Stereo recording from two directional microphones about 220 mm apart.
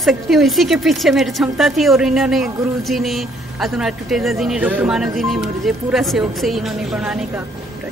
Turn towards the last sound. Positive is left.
turn(degrees=-5)  # may be behind; listen again after turning